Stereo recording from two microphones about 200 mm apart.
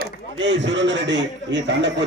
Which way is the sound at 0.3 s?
60° right (ahead or behind).